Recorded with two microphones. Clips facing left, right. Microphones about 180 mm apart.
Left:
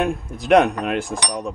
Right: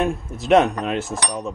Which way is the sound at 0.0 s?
Centre (ahead or behind).